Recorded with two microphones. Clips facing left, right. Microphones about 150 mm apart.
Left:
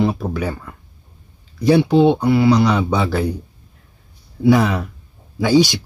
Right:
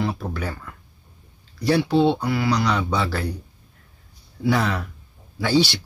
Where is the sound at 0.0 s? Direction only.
15° left (ahead or behind).